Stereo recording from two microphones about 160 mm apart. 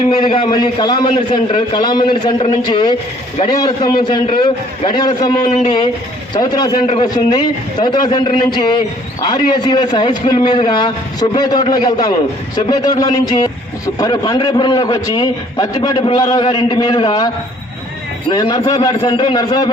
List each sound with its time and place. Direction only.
0.2 s a man's voice: 30° left (ahead or behind)
5.5 s speech: 45° left (ahead or behind)
6.3 s a man's voice: 25° left (ahead or behind)
18.3 s a man's voice: 25° left (ahead or behind)